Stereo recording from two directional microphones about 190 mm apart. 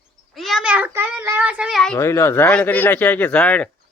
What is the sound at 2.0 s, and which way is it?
Child singing, 15° left (ahead or behind).